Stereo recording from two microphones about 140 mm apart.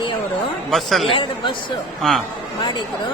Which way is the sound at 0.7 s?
Centre (ahead or behind).